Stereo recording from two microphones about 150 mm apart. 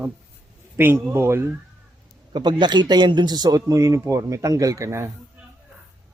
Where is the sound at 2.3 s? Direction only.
30° right (ahead or behind).